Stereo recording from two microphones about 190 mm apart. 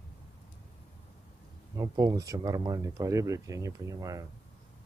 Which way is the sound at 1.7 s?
20° right (ahead or behind).